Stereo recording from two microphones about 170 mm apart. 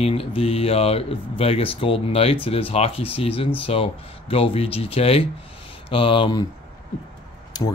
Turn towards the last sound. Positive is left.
turn(degrees=25)  # may be behind; listen again after turning